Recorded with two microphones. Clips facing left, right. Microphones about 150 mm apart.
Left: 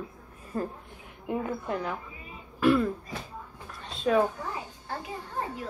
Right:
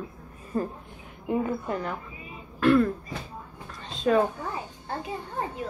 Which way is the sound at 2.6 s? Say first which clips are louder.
Right 3 dB; 10° left (ahead or behind).